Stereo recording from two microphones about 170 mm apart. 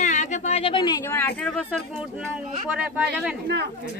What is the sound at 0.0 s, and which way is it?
Speech, 45° left (ahead or behind).